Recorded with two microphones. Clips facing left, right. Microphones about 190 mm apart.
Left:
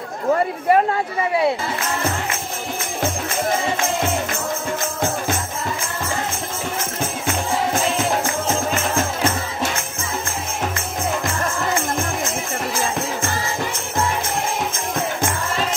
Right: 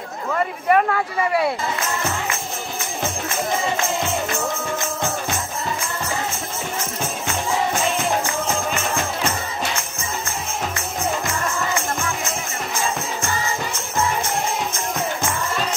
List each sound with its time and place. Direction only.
0.3 s speech: 30° left (ahead or behind)